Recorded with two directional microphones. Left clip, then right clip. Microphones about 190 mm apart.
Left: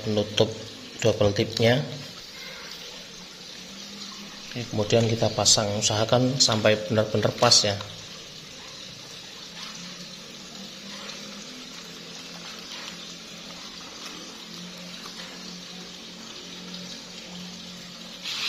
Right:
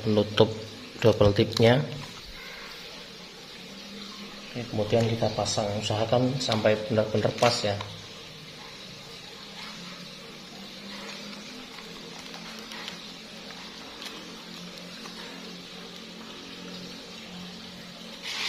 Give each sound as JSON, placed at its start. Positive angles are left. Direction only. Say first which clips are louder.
{"t": 0.1, "sound": "speech", "louder": "right 1 dB", "side_deg": -20}
{"t": 4.7, "sound": "speech", "louder": "left 3 dB", "side_deg": 25}